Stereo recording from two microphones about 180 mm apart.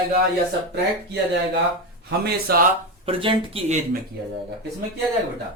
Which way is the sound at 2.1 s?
60° right (ahead or behind).